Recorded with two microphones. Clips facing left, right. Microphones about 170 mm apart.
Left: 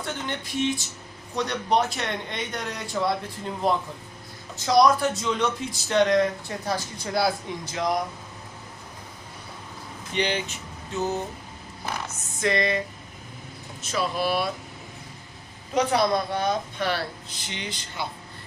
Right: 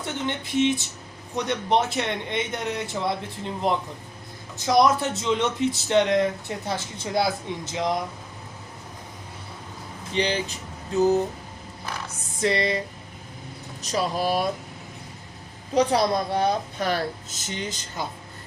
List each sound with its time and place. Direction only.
0.0 s speech: 20° right (ahead or behind)
10.2 s a woman's voice: 35° right (ahead or behind)
12.0 s a sound: 30° right (ahead or behind)
13.8 s a woman's voice: 40° right (ahead or behind)
15.7 s a woman's voice: 35° right (ahead or behind)